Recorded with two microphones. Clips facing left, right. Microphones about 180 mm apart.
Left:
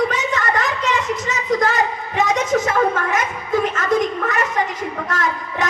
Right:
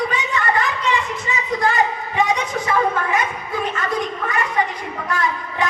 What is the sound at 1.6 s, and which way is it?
A woman's voice, 40° left (ahead or behind).